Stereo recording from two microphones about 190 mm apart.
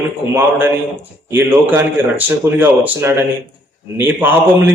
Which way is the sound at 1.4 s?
10° right (ahead or behind).